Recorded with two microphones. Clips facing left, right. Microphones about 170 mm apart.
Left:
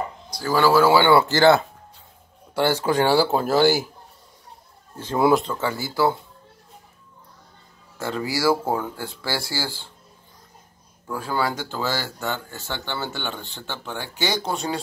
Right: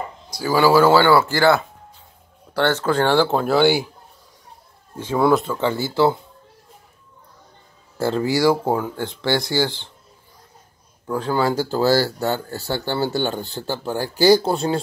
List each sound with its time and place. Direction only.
0.4 s a man's voice: centre (ahead or behind)
1.1 s speech: 25° left (ahead or behind)
2.5 s a man's voice: 10° left (ahead or behind)
5.1 s a man's voice: centre (ahead or behind)
5.6 s speech: 20° right (ahead or behind)
8.0 s speech: 30° right (ahead or behind)
11.2 s speech: 20° right (ahead or behind)
11.5 s speech: 40° right (ahead or behind)